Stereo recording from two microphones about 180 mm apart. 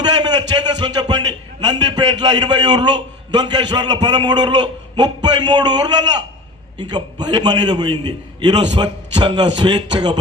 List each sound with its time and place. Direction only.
0.0 s a man's voice: 25° right (ahead or behind)